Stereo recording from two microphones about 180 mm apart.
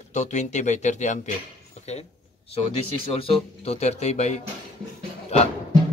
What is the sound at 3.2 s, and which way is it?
Speech, 35° left (ahead or behind).